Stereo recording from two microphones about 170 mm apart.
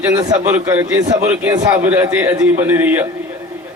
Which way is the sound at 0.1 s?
15° right (ahead or behind).